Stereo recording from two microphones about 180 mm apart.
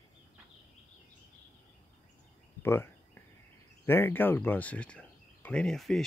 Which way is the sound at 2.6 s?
10° left (ahead or behind).